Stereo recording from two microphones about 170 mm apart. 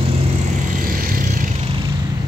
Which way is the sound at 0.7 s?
55° right (ahead or behind).